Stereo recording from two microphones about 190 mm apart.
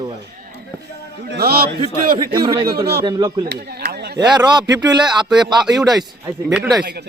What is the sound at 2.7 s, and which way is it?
Speech, 55° right (ahead or behind).